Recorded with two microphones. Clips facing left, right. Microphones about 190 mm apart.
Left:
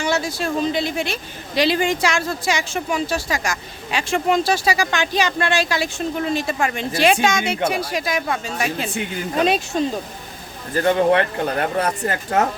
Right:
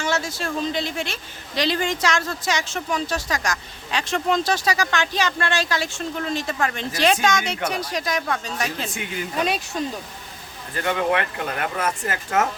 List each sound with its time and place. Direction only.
0.0 s speech: 15° left (ahead or behind)
8.9 s speech: 25° left (ahead or behind)